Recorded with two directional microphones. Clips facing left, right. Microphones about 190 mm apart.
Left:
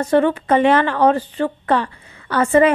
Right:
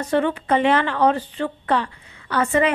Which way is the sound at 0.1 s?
45° left (ahead or behind).